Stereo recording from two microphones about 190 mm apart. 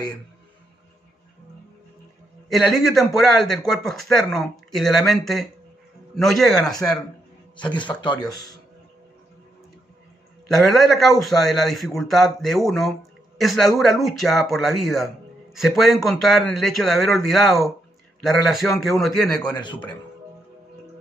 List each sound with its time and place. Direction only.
2.5 s speech: centre (ahead or behind)
7.5 s a man's voice: 25° left (ahead or behind)
10.5 s speech: centre (ahead or behind)
19.5 s speech: 25° left (ahead or behind)